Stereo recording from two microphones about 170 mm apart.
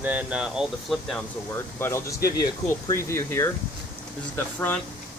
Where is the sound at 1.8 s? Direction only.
15° left (ahead or behind).